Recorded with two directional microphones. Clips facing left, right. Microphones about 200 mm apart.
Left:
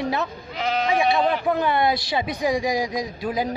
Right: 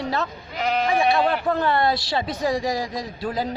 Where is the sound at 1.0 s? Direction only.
Centre (ahead or behind).